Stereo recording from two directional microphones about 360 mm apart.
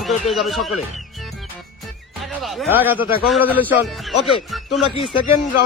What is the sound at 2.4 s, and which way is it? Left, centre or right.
Speech, centre.